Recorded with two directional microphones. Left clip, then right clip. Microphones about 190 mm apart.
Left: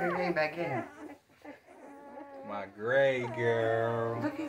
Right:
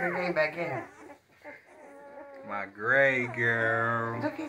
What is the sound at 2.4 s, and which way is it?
Speech, 10° right (ahead or behind).